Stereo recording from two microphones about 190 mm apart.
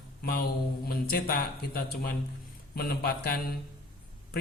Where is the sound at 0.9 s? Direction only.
50° left (ahead or behind).